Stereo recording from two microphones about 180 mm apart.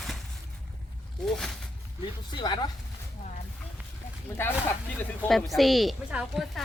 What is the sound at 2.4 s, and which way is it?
Speech, 25° left (ahead or behind).